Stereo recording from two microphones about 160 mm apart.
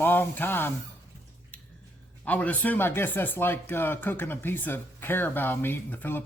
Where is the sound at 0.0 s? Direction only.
10° left (ahead or behind).